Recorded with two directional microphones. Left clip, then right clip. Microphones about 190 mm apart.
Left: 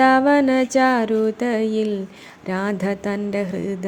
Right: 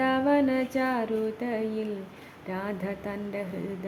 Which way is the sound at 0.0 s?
30° left (ahead or behind).